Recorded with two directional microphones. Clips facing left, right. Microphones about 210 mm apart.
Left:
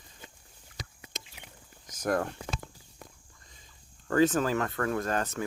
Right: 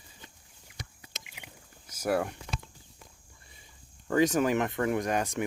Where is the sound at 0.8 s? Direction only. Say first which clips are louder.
Left 1 dB; 90° left.